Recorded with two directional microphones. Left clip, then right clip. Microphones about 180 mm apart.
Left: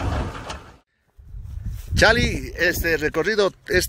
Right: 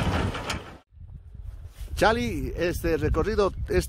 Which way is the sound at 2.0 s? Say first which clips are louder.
Left 6 dB; centre (ahead or behind).